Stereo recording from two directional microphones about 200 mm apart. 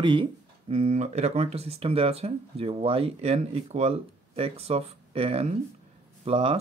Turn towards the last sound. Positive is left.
turn(degrees=-30)  # may be behind; listen again after turning